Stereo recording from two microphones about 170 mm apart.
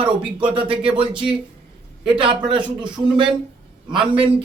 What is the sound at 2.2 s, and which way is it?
Speech, 30° right (ahead or behind).